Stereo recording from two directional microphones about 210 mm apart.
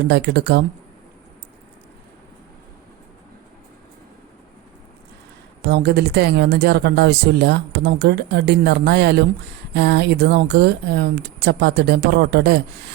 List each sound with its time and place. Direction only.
0.1 s speech: 50° right (ahead or behind)
5.6 s speech: 50° right (ahead or behind)